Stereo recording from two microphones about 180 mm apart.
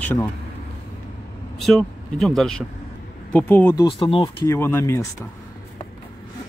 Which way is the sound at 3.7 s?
25° left (ahead or behind).